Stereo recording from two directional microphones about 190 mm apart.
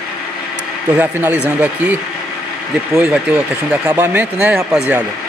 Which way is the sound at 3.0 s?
5° right (ahead or behind).